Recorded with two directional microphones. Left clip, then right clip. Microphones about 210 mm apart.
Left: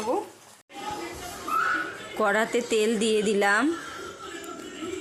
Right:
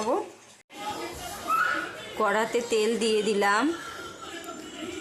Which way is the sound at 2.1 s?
20° left (ahead or behind).